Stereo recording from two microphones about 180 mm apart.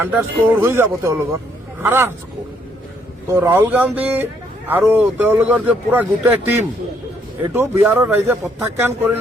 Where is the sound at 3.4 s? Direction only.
10° right (ahead or behind).